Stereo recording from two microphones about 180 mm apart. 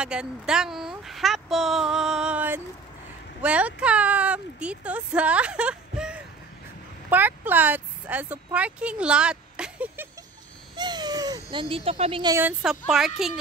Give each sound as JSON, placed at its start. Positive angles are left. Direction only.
{"t": 0.0, "sound": "speech", "side_deg": -5}
{"t": 10.8, "sound": "babbling", "side_deg": -25}
{"t": 11.7, "sound": "speech", "side_deg": -30}
{"t": 12.4, "sound": "speech", "side_deg": -5}